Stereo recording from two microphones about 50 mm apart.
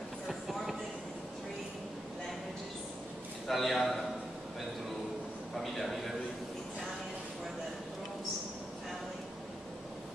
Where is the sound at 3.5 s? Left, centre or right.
Centre.